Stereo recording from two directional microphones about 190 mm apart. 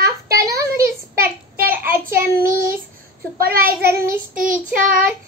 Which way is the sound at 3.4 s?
50° right (ahead or behind).